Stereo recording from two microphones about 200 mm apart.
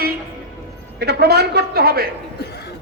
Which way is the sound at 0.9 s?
55° right (ahead or behind).